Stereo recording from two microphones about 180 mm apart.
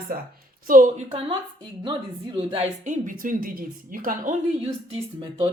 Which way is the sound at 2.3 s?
35° right (ahead or behind).